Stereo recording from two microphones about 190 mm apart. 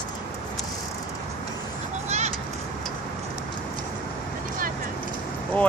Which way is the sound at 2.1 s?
35° right (ahead or behind).